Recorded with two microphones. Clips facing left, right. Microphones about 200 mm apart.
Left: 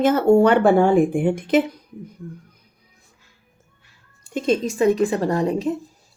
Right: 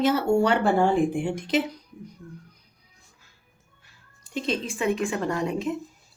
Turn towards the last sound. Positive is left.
turn(degrees=35)  # may be behind; listen again after turning